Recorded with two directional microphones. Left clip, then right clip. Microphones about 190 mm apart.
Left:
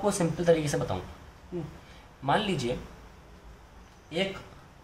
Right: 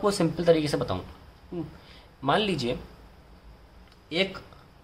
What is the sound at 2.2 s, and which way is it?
Speech, 35° right (ahead or behind).